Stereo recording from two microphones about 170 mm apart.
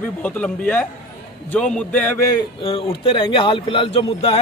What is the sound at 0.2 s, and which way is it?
A man's voice, 10° left (ahead or behind).